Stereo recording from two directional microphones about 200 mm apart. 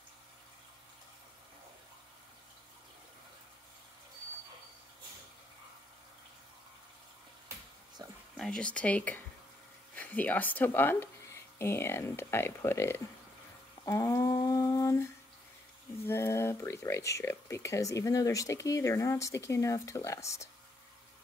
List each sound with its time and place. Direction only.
8.0 s a sound: 20° right (ahead or behind)
8.4 s speech: 5° left (ahead or behind)
13.8 s humming: 15° left (ahead or behind)
16.1 s speech: 10° left (ahead or behind)